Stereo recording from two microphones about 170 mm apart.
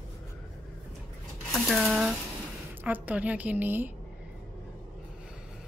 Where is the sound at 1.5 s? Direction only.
Centre (ahead or behind).